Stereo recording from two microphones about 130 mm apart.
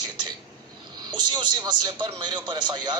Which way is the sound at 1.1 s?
35° right (ahead or behind).